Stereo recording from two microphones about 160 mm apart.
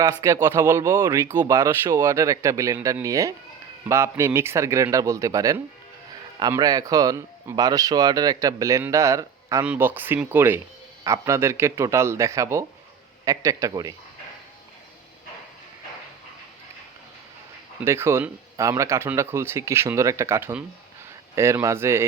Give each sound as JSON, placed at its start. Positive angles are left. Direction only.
{"t": 0.0, "sound": "speech", "side_deg": -20}
{"t": 17.8, "sound": "speech", "side_deg": -15}